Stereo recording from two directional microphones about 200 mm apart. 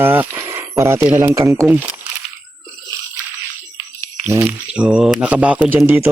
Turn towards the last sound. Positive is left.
turn(degrees=-10)  # may be behind; listen again after turning